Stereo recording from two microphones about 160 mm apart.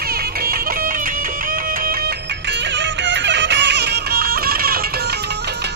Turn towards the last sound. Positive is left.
turn(degrees=-70)  # may be behind; listen again after turning